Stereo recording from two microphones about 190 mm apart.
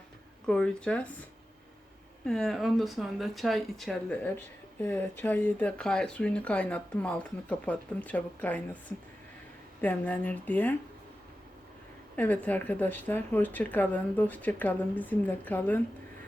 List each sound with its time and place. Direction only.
0.4 s speech: 5° left (ahead or behind)
2.2 s speech: 5° left (ahead or behind)
9.8 s speech: 10° left (ahead or behind)
12.1 s speech: 10° left (ahead or behind)